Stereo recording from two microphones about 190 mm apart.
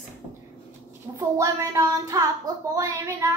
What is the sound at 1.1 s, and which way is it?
Child singing, 15° right (ahead or behind).